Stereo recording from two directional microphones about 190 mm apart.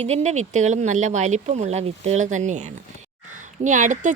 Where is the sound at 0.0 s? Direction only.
35° right (ahead or behind).